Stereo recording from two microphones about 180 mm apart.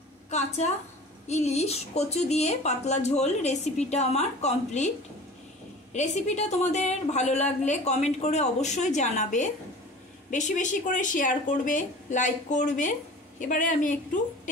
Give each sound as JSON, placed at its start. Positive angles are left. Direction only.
{"t": 0.3, "sound": "a woman's voice", "side_deg": 40}
{"t": 5.9, "sound": "a woman's voice", "side_deg": 40}